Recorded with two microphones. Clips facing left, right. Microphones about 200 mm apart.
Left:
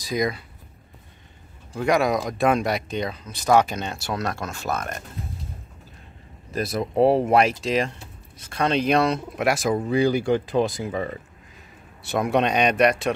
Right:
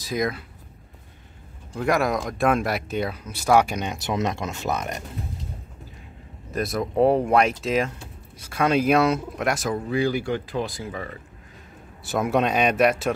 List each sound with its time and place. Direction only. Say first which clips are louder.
0.0 s speech: left 1 dB; centre (ahead or behind)
1.7 s speech: left 2 dB; centre (ahead or behind); by 5.0 s 15° right (ahead or behind)
6.5 s speech: even; centre (ahead or behind)
9.4 s speech: left 7 dB; 10° left (ahead or behind)
9.8 s speech: left 3 dB; 20° left (ahead or behind)
12.1 s speech: left 1 dB; 5° right (ahead or behind)